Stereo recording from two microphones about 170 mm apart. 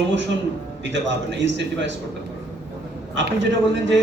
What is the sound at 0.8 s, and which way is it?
A man's voice, 90° right.